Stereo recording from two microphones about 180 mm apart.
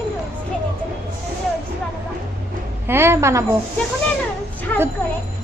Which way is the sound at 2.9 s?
15° right (ahead or behind).